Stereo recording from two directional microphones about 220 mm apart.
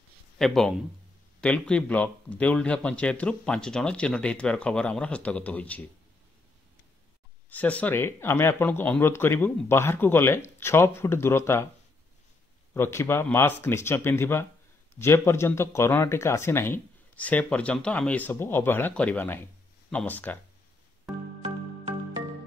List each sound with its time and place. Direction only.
0.4 s a man's voice: centre (ahead or behind)
7.4 s speech: 5° left (ahead or behind)
12.7 s speech: 10° left (ahead or behind)
21.4 s music: 25° right (ahead or behind)